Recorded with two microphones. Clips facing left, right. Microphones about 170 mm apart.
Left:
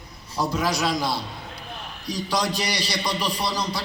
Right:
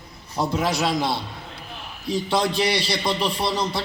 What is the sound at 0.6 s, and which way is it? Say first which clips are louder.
Speech: right 1 dB; 25° right (ahead or behind).